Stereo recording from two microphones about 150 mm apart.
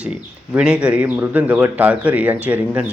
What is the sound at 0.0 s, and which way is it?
Speech, 5° right (ahead or behind).